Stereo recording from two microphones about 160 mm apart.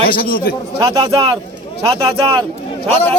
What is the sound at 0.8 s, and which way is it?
Speech, 25° right (ahead or behind).